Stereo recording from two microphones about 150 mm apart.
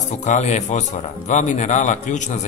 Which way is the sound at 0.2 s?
50° left (ahead or behind).